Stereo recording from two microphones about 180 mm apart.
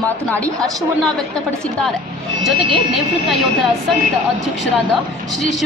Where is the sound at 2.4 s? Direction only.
Centre (ahead or behind).